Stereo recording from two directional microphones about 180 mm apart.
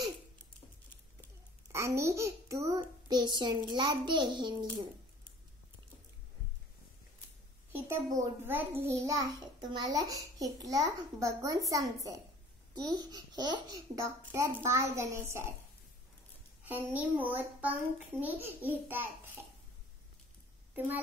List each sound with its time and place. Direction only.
1.7 s a child's voice: 15° right (ahead or behind)
7.7 s a child's voice: 15° right (ahead or behind)
16.6 s a child's voice: 10° right (ahead or behind)
20.7 s a child's voice: 10° right (ahead or behind)